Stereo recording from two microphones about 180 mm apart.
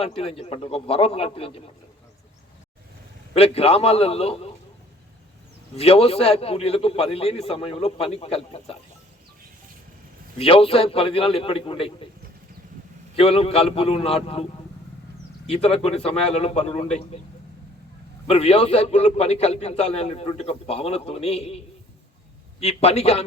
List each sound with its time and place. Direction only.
0.0 s a man's voice: 35° left (ahead or behind)
3.3 s a man's voice: 35° left (ahead or behind)
5.7 s a man's voice: 35° left (ahead or behind)
10.3 s a man's voice: 30° left (ahead or behind)
13.1 s a man's voice: 35° left (ahead or behind)
15.4 s a man's voice: 35° left (ahead or behind)
18.3 s a man's voice: 35° left (ahead or behind)
22.6 s a man's voice: 35° left (ahead or behind)